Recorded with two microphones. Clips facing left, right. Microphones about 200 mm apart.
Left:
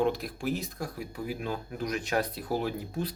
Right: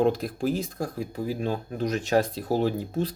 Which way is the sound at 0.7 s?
45° right (ahead or behind).